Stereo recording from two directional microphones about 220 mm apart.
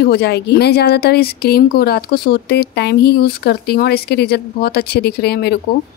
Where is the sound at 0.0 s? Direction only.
50° left (ahead or behind).